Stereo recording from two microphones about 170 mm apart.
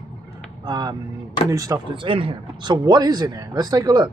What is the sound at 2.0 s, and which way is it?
Speech, 30° right (ahead or behind).